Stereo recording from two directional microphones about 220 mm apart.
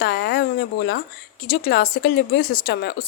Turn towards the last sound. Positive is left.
turn(degrees=45)  # may be behind; listen again after turning